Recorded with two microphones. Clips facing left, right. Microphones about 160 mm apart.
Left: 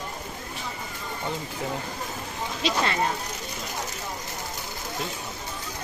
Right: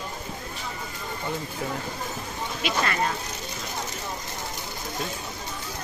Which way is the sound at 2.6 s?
25° left (ahead or behind).